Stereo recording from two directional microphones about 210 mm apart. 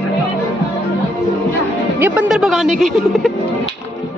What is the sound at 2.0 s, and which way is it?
Speech, 5° right (ahead or behind).